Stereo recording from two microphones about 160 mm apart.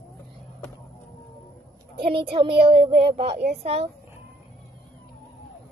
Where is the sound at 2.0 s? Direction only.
35° right (ahead or behind).